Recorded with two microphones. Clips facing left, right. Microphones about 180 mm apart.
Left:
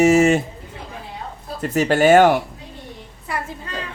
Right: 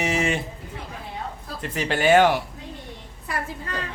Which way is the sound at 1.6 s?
45° left (ahead or behind).